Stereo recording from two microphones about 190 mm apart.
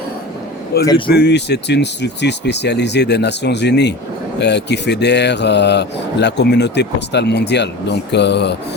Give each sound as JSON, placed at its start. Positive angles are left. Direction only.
{"t": 0.7, "sound": "speech", "side_deg": 55}